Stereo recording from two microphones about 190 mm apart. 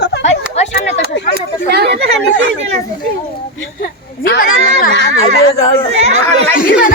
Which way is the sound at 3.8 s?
50° left (ahead or behind).